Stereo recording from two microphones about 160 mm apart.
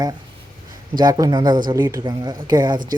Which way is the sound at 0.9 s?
25° right (ahead or behind).